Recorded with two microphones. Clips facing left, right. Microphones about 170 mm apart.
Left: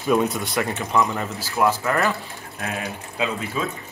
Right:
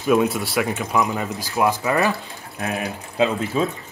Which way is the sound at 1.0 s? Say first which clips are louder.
Right 2 dB; 15° right (ahead or behind).